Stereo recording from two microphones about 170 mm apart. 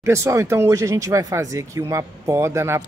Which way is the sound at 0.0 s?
15° right (ahead or behind).